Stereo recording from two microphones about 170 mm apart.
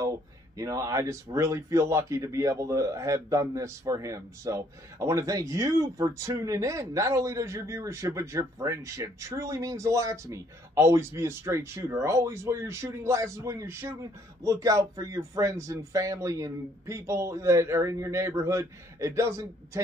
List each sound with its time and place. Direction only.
0.6 s a man's voice: 20° right (ahead or behind)